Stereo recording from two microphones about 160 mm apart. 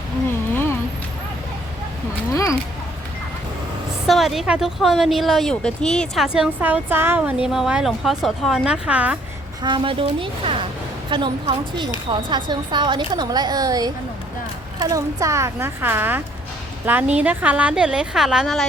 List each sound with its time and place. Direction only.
2.3 s speech: 20° left (ahead or behind)
4.0 s a woman's voice: centre (ahead or behind)
9.6 s a woman's voice: 30° right (ahead or behind); by 18.6 s centre (ahead or behind)